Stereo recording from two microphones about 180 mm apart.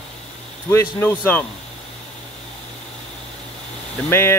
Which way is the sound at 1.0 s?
10° left (ahead or behind).